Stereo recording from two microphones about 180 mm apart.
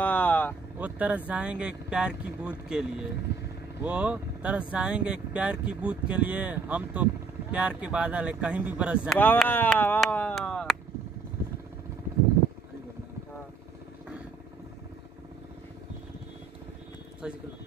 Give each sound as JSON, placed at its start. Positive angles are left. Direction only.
{"t": 0.0, "sound": "vehicle", "side_deg": 10}
{"t": 0.7, "sound": "speech", "side_deg": -10}
{"t": 9.2, "sound": "speech", "side_deg": 10}
{"t": 9.9, "sound": "a sound", "side_deg": 5}
{"t": 17.2, "sound": "speech", "side_deg": -5}